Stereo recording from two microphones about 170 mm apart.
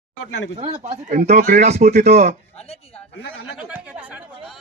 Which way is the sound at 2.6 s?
35° left (ahead or behind).